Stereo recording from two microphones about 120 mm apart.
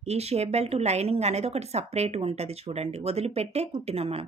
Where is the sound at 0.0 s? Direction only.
60° right (ahead or behind).